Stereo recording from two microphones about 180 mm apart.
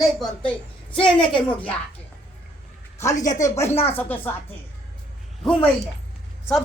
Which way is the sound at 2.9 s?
15° left (ahead or behind).